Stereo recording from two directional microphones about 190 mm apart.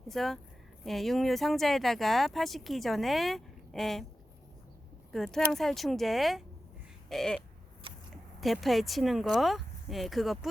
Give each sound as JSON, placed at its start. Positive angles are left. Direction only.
{"t": 0.1, "sound": "speech", "side_deg": 0}
{"t": 5.1, "sound": "speech", "side_deg": 0}